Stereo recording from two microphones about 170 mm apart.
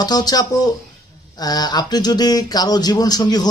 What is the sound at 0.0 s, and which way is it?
Speech, 25° left (ahead or behind).